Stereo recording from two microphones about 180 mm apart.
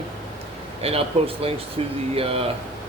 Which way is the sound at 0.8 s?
35° right (ahead or behind).